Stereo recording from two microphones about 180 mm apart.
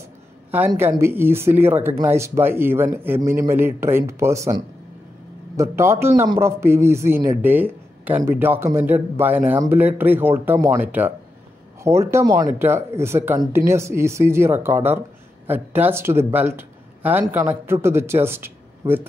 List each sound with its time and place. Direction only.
0.7 s speech: 15° right (ahead or behind)